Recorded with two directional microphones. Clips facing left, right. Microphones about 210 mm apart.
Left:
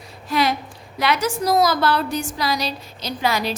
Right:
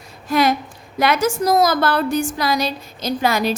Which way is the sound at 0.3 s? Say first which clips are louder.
Right 4 dB; 50° right (ahead or behind).